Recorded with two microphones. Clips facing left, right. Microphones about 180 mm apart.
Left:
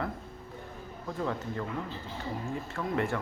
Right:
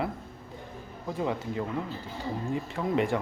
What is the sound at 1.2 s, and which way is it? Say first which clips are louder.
Speech: right 3 dB; 15° right (ahead or behind).